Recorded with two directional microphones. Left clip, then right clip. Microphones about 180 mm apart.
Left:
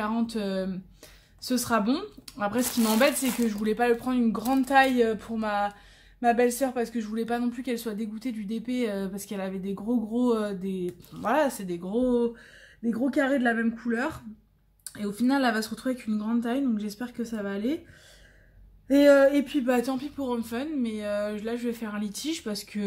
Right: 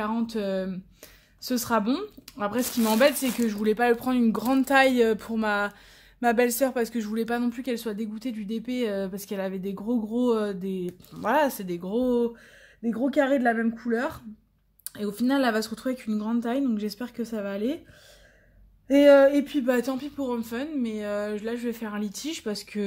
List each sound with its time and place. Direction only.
0.0 s speech: 35° right (ahead or behind)
18.9 s speech: 40° right (ahead or behind)